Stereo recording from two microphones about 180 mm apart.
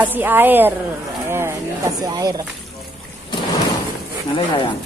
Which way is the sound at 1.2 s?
15° right (ahead or behind).